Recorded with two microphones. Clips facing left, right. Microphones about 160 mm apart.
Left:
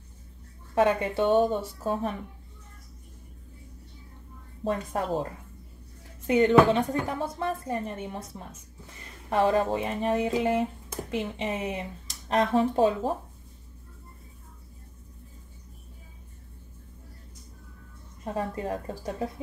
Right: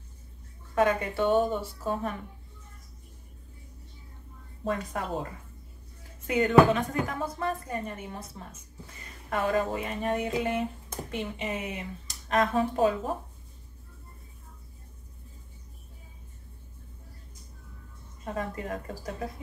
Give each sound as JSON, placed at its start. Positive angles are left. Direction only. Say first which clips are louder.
{"t": 0.7, "sound": "speech", "louder": "left 2 dB", "side_deg": 25}
{"t": 4.6, "sound": "speech", "louder": "left 3 dB", "side_deg": 30}
{"t": 6.2, "sound": "speech", "louder": "left 1 dB", "side_deg": 30}
{"t": 9.3, "sound": "speech", "louder": "left 4 dB", "side_deg": 30}
{"t": 18.3, "sound": "speech", "louder": "left 3 dB", "side_deg": 30}